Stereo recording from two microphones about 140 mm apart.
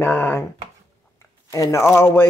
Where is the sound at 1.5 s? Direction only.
20° left (ahead or behind).